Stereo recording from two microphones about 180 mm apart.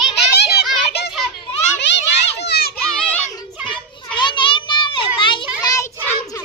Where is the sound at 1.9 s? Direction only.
75° left (ahead or behind).